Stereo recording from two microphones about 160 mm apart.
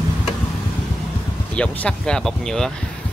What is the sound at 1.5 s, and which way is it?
Speech, 5° left (ahead or behind).